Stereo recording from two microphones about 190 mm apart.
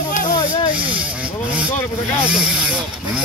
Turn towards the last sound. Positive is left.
turn(degrees=-5)  # may be behind; listen again after turning